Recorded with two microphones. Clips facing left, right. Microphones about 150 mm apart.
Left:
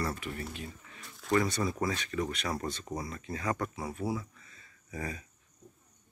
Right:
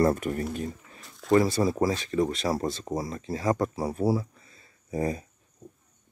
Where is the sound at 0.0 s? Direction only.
45° right (ahead or behind).